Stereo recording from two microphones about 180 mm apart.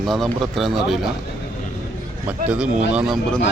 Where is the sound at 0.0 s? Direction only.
Centre (ahead or behind).